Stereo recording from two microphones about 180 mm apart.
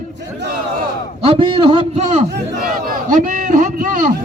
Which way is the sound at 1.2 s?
30° right (ahead or behind).